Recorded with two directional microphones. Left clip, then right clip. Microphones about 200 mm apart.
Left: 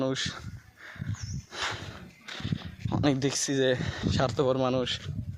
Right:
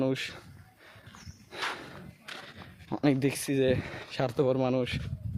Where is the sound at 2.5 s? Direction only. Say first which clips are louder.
Left 5 dB; 15° right (ahead or behind).